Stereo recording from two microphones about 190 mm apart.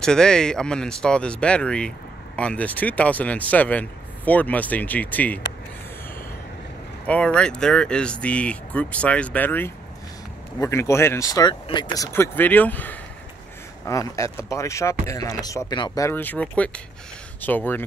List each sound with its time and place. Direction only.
0.0 s speech: 5° left (ahead or behind)
7.1 s speech: 5° left (ahead or behind)